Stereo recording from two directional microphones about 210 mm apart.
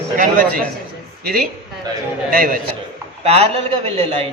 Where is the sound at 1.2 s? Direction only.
45° right (ahead or behind).